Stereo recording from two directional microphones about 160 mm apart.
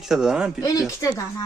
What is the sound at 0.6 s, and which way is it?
Speech, 20° left (ahead or behind).